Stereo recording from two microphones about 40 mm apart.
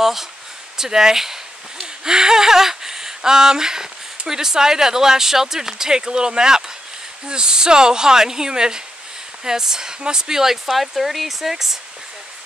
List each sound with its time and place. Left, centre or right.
0.0 s speech: centre